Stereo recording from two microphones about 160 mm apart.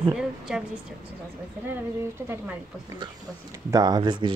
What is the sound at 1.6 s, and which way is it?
Speech, 15° right (ahead or behind).